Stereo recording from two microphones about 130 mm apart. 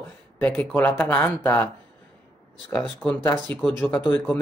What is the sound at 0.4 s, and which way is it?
Speech, 15° left (ahead or behind).